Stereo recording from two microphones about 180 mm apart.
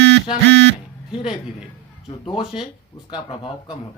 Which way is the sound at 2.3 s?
30° left (ahead or behind).